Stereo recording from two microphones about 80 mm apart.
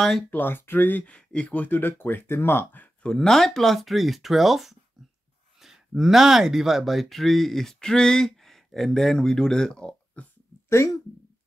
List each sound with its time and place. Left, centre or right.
0.3 s speech: left
3.1 s speech: centre
10.7 s speech: left